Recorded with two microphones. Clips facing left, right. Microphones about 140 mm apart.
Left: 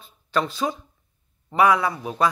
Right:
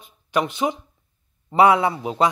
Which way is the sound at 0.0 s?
15° right (ahead or behind).